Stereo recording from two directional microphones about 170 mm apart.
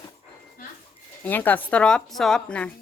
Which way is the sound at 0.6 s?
60° left (ahead or behind).